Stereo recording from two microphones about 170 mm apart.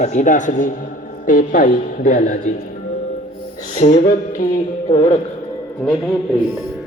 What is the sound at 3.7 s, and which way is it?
Speech, 45° left (ahead or behind).